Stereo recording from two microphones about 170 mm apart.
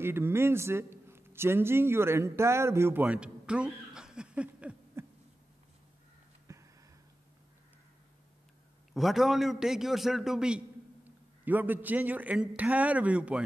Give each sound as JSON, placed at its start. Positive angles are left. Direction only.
{"t": 0.0, "sound": "a man's voice", "side_deg": -15}
{"t": 6.4, "sound": "a sound", "side_deg": -15}
{"t": 8.9, "sound": "a man's voice", "side_deg": 0}